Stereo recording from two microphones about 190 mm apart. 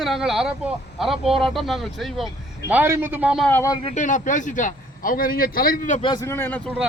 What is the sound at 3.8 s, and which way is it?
A man's voice, 40° left (ahead or behind).